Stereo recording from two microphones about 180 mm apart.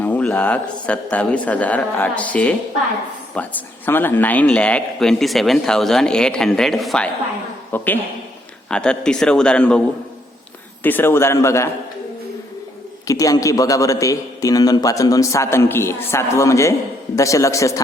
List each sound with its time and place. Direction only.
0.0 s a man's voice: 10° left (ahead or behind)
10.8 s a man's voice: 10° left (ahead or behind)
13.1 s a man's voice: 20° left (ahead or behind)